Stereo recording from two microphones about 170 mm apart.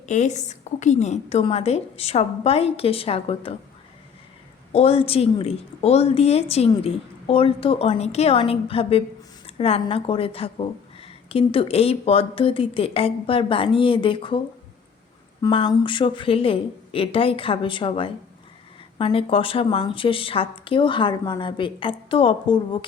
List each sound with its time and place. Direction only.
0.0 s a woman's voice: 45° left (ahead or behind)
4.7 s a woman's voice: 35° left (ahead or behind)